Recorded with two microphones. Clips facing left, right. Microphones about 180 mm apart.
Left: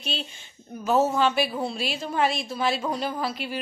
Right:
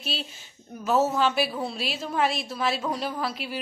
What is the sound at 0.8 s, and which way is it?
A woman's voice, centre (ahead or behind).